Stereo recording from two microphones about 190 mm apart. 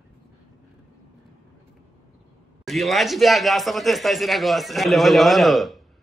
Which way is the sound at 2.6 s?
Centre (ahead or behind).